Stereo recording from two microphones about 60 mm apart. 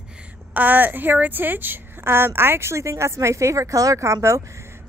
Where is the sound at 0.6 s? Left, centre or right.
Right.